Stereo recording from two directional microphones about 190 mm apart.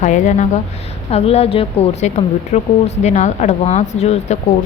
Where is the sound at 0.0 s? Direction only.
40° left (ahead or behind).